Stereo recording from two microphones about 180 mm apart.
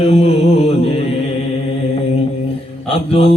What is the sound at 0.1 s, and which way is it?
Mantra, 35° left (ahead or behind).